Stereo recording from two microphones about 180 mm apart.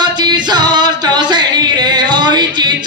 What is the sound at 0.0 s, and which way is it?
Music, 25° right (ahead or behind).